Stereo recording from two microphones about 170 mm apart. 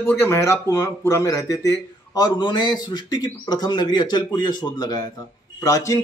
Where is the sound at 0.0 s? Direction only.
15° left (ahead or behind).